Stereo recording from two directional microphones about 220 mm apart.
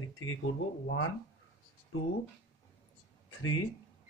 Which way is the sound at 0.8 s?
65° left (ahead or behind).